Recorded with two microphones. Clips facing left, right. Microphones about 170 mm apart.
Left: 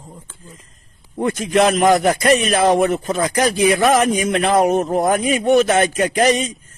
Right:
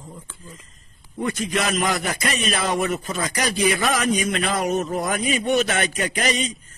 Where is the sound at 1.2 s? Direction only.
50° left (ahead or behind).